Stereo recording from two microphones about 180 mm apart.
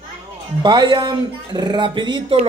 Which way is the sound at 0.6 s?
25° right (ahead or behind).